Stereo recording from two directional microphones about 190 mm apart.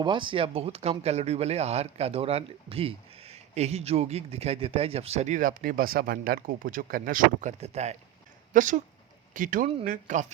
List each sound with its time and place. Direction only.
0.0 s speech: 25° right (ahead or behind); by 10.3 s 40° right (ahead or behind)